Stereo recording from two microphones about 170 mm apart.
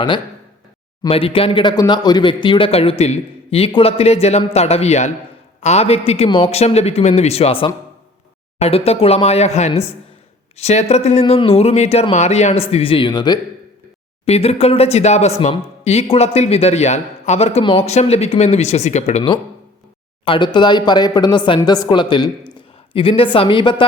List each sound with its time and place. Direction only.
1.0 s speech: 30° left (ahead or behind)
14.3 s speech: 35° left (ahead or behind)